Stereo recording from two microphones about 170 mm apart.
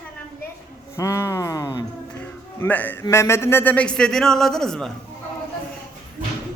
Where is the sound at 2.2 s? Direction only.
10° left (ahead or behind).